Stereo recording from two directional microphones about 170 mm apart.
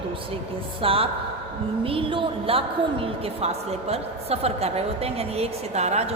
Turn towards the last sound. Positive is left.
turn(degrees=-40)  # may be behind; listen again after turning